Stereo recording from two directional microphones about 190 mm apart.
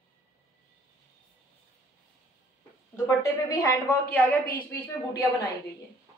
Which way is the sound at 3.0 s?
20° left (ahead or behind).